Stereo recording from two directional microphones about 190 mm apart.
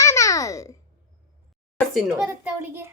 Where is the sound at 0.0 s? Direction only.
15° left (ahead or behind).